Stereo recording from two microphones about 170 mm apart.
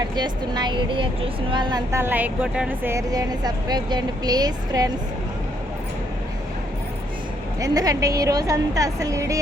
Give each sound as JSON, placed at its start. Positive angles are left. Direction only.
{"t": 0.2, "sound": "a woman's voice", "side_deg": -25}
{"t": 7.6, "sound": "a woman's voice", "side_deg": -20}